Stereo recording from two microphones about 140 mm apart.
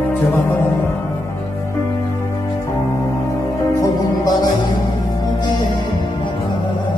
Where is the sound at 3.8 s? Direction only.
30° left (ahead or behind).